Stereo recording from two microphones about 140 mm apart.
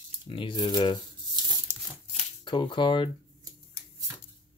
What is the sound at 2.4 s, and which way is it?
Speech, 35° left (ahead or behind).